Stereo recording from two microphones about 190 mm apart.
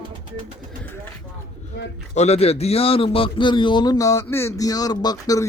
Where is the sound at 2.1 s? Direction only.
35° left (ahead or behind).